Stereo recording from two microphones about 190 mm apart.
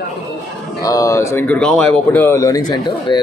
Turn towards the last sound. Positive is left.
turn(degrees=20)  # may be behind; listen again after turning